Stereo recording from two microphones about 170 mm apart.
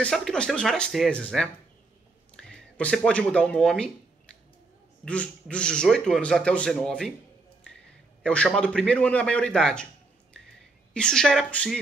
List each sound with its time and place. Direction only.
0.0 s a man's voice: 5° left (ahead or behind)
5.0 s a man's voice: 5° left (ahead or behind)
8.2 s a man's voice: 5° left (ahead or behind)
10.9 s a man's voice: 5° left (ahead or behind)